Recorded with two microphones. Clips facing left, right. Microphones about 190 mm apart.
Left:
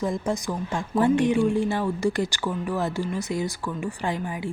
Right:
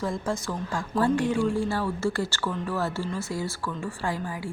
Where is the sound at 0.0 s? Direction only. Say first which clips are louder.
Left 3 dB; 20° left (ahead or behind).